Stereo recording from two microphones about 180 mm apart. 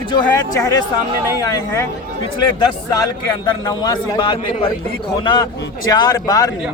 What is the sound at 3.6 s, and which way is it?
Speech, 20° left (ahead or behind).